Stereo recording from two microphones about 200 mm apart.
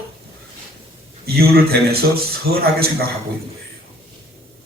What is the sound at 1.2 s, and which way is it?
Speech, 50° right (ahead or behind).